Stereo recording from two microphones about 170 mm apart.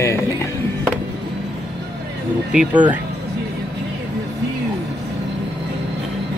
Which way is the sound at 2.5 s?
10° right (ahead or behind).